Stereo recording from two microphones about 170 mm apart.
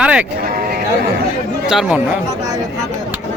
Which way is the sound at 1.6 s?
5° right (ahead or behind).